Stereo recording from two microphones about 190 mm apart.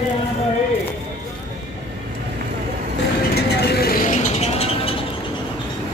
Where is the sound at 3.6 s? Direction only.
55° left (ahead or behind).